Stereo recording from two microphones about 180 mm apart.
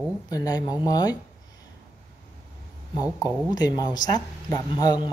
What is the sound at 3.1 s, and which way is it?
Speech, 20° left (ahead or behind).